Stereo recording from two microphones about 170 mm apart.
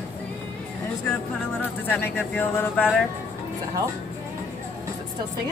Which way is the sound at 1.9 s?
10° left (ahead or behind).